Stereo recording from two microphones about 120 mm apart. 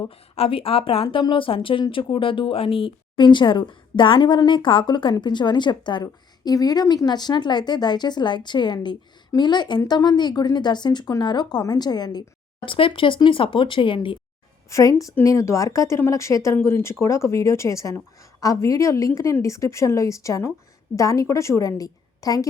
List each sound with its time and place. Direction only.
0.3 s speech: 55° left (ahead or behind); by 12.2 s 35° left (ahead or behind)
12.6 s speech: 45° left (ahead or behind)
14.7 s speech: 25° left (ahead or behind)